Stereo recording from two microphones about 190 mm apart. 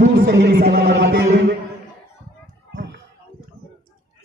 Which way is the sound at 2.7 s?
70° right (ahead or behind).